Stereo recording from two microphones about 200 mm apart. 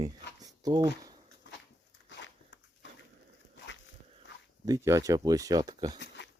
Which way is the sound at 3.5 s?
65° left (ahead or behind).